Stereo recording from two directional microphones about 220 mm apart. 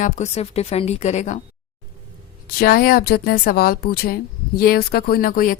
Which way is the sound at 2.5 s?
40° left (ahead or behind).